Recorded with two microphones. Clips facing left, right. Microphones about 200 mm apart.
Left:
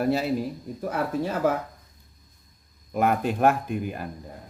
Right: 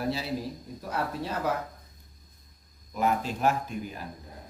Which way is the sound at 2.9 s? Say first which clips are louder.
Left 4 dB; 60° left (ahead or behind).